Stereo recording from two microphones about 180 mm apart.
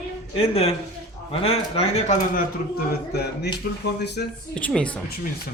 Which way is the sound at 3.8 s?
70° left (ahead or behind).